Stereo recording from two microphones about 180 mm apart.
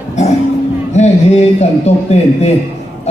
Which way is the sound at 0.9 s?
35° left (ahead or behind).